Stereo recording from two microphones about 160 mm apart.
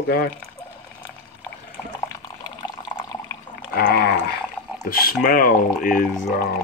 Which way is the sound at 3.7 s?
70° left (ahead or behind).